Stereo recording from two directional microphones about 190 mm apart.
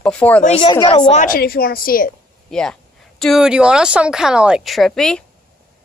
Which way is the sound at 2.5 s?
5° left (ahead or behind).